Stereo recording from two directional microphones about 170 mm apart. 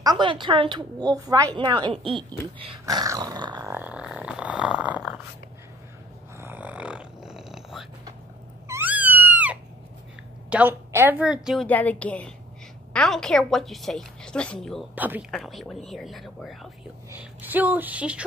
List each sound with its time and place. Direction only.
0.0 s speech: 25° right (ahead or behind)
2.8 s dog: 20° right (ahead or behind)
3.7 s a sound: 5° right (ahead or behind)
6.4 s a sound: 10° right (ahead or behind)
8.6 s cat: 10° right (ahead or behind)
10.5 s a woman's voice: 10° right (ahead or behind)
11.6 s a woman's voice: 10° left (ahead or behind)
15.0 s a woman's voice: 10° right (ahead or behind)
15.3 s a woman's voice: centre (ahead or behind)
17.1 s a woman's voice: 10° right (ahead or behind)